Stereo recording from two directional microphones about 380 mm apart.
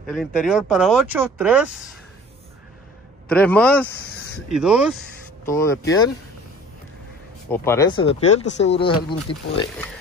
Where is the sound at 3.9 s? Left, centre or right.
Left.